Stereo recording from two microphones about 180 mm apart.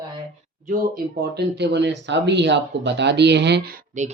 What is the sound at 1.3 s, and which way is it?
Speech, 70° right (ahead or behind).